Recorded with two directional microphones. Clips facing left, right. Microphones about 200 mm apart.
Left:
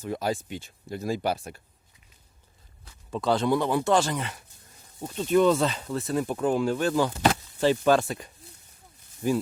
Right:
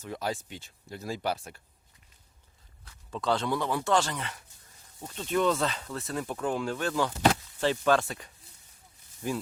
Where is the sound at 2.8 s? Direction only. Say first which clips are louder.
Left 4 dB; 10° left (ahead or behind).